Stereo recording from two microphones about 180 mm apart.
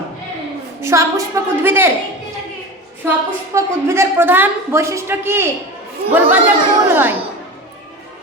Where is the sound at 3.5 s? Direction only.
15° right (ahead or behind).